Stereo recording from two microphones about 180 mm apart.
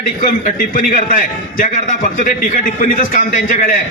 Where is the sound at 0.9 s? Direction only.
50° left (ahead or behind).